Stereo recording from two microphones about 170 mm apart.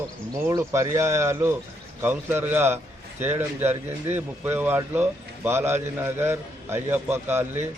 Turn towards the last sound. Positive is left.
turn(degrees=-15)  # may be behind; listen again after turning